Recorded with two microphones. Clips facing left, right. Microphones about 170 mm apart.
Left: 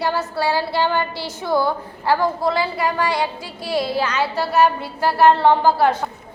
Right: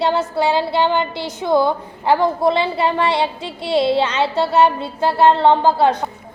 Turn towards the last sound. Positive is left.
turn(degrees=-20)  # may be behind; listen again after turning